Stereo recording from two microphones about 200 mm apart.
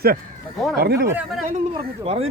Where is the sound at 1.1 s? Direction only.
5° right (ahead or behind).